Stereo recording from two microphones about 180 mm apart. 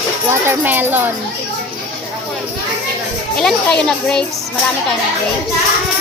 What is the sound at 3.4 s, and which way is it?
Speech, 5° left (ahead or behind).